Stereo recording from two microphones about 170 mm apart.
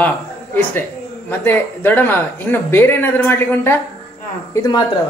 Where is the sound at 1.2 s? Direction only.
10° left (ahead or behind).